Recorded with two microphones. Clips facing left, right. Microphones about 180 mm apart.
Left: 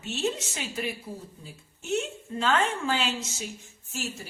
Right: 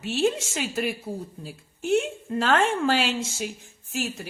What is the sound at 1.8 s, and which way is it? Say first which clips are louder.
A woman's voice: right 6 dB; 55° right (ahead or behind).